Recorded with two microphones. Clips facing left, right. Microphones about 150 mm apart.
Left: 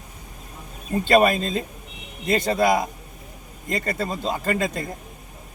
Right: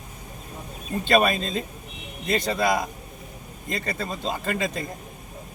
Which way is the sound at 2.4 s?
50° left (ahead or behind).